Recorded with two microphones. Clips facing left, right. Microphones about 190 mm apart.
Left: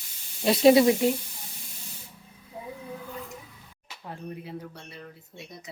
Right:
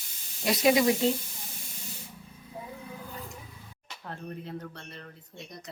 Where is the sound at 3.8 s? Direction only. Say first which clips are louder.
Left 2 dB; 10° left (ahead or behind).